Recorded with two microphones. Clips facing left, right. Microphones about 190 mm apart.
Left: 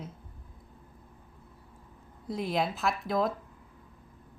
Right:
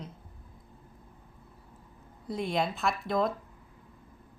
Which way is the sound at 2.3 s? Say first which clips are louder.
Even; centre (ahead or behind).